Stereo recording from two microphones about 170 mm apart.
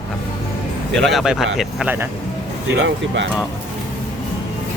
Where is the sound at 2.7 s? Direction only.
90° right.